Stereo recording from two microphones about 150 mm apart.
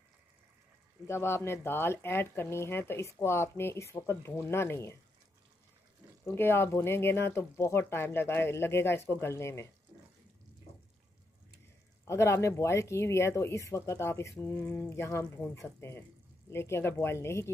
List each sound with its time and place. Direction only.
1.0 s speech: 15° left (ahead or behind)
6.2 s speech: 15° left (ahead or behind)
9.9 s water tap: 30° right (ahead or behind)
12.1 s speech: 20° left (ahead or behind)